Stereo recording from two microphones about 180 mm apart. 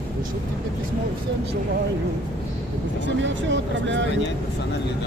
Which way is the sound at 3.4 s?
90° right.